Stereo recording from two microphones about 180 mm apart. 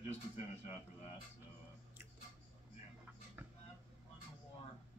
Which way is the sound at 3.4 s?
10° right (ahead or behind).